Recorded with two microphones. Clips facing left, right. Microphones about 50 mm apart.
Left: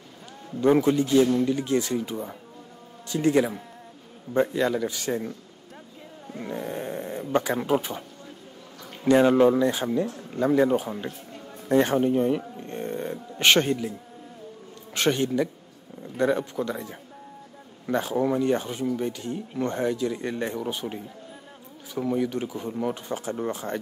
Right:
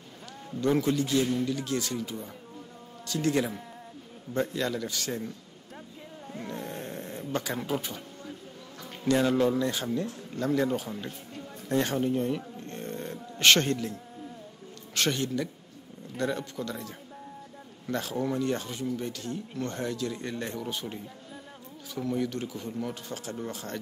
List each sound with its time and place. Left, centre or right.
0.6 s a man's voice: left
6.2 s snoring: centre
7.3 s speech: left
9.0 s speech: left
11.7 s a sound: left
15.0 s speech: left